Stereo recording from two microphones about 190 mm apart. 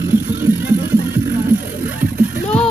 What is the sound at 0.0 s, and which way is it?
Vehicle, 15° right (ahead or behind).